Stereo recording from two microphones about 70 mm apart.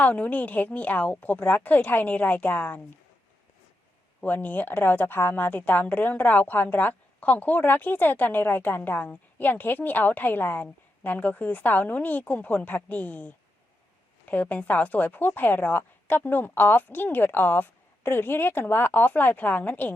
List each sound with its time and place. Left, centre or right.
0.0 s a woman's voice: left
4.2 s a woman's voice: left